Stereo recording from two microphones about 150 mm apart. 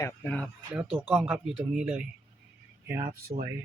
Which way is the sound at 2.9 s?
80° right.